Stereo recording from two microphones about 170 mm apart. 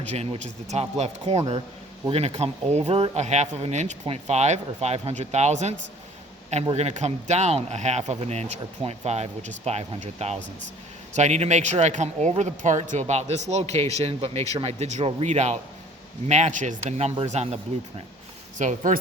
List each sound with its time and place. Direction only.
0.1 s speech: 40° right (ahead or behind)
6.7 s speech: 40° right (ahead or behind)